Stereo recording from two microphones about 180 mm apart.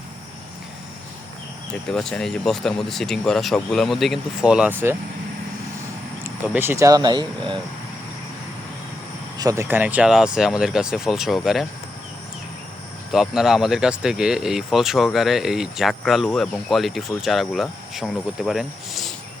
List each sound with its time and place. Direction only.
1.9 s speech: 5° left (ahead or behind); by 4.9 s 10° right (ahead or behind)
6.2 s speech: 10° right (ahead or behind)
9.4 s speech: 15° right (ahead or behind); by 11.6 s centre (ahead or behind)
13.1 s speech: centre (ahead or behind)